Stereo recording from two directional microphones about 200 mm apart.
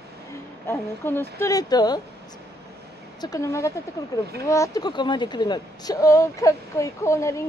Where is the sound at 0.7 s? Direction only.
10° left (ahead or behind).